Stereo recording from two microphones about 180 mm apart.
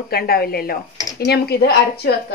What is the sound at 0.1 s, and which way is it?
A woman's voice, 60° left (ahead or behind).